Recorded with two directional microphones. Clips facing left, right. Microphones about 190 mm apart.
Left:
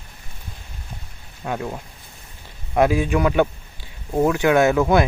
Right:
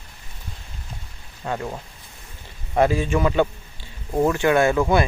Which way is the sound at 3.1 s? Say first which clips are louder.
Left 1 dB; centre (ahead or behind).